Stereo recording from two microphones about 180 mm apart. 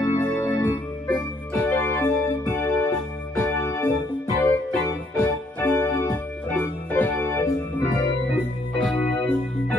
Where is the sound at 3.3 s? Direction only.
10° left (ahead or behind).